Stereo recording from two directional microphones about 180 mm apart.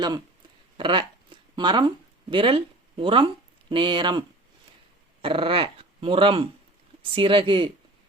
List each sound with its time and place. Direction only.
0.8 s a sound: 25° right (ahead or behind)
2.3 s speech: 30° right (ahead or behind)
5.2 s speech: 30° right (ahead or behind)